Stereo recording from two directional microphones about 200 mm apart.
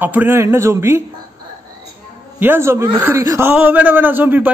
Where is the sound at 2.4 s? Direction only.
10° right (ahead or behind).